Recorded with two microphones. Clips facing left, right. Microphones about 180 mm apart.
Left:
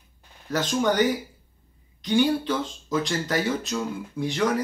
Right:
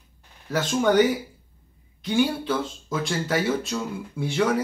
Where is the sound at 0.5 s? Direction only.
5° right (ahead or behind).